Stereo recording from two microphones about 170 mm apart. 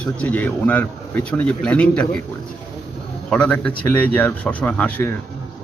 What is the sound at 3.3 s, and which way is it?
Speech, 5° left (ahead or behind).